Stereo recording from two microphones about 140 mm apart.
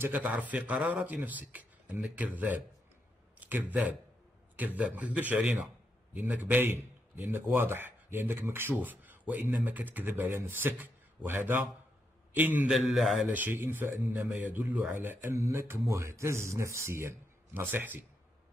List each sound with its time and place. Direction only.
0.0 s a man's voice: 10° right (ahead or behind)
12.7 s a man's voice: centre (ahead or behind)
13.3 s a man's voice: 15° right (ahead or behind)